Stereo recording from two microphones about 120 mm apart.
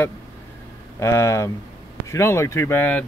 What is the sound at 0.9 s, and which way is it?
Speech, 25° left (ahead or behind).